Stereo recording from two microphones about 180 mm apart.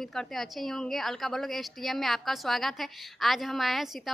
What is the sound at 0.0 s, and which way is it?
A woman's voice, centre (ahead or behind).